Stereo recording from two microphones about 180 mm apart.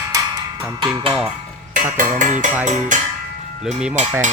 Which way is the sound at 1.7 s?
50° right (ahead or behind).